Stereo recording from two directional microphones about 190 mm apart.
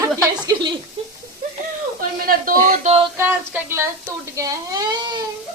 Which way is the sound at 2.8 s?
30° right (ahead or behind).